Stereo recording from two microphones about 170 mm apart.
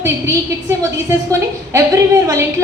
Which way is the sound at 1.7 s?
20° right (ahead or behind).